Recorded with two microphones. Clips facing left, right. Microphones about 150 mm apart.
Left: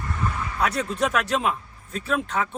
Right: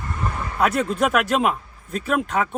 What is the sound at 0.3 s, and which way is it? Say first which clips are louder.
A man's voice: right 6 dB; 55° right (ahead or behind).